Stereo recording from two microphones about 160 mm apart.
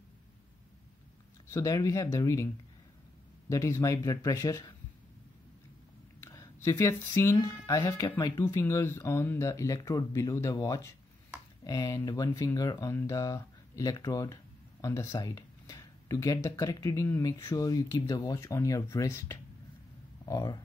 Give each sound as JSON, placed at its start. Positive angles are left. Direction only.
{"t": 1.5, "sound": "speech", "side_deg": 20}
{"t": 6.2, "sound": "speech", "side_deg": 20}